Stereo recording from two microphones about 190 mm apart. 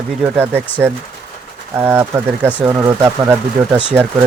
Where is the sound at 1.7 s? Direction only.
10° right (ahead or behind).